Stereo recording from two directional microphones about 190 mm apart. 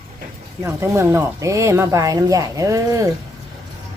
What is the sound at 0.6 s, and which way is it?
Speech, 15° right (ahead or behind).